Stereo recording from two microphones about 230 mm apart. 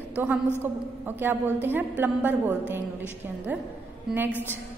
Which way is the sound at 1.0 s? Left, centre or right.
Centre.